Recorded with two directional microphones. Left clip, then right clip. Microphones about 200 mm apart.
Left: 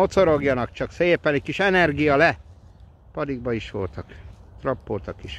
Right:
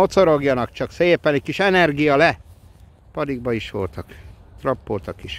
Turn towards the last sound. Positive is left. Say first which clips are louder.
# right 3 dB
turn(degrees=-20)  # may be behind; listen again after turning